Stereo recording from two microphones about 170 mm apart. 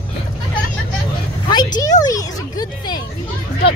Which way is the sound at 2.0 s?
20° left (ahead or behind).